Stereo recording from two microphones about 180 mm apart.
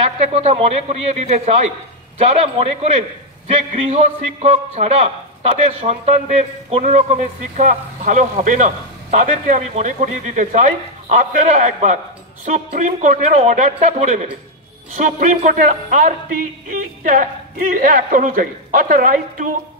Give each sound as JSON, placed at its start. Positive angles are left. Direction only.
{"t": 0.3, "sound": "a man's voice", "side_deg": -35}